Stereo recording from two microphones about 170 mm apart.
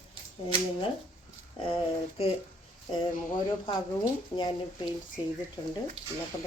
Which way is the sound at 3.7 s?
25° left (ahead or behind).